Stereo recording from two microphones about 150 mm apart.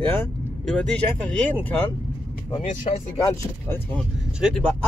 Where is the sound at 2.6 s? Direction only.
55° left (ahead or behind).